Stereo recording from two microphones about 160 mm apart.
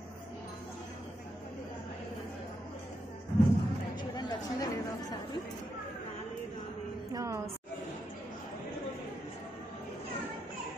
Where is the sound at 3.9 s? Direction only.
25° left (ahead or behind).